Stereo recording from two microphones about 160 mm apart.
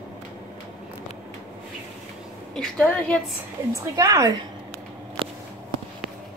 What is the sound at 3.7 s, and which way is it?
Speech, 20° right (ahead or behind).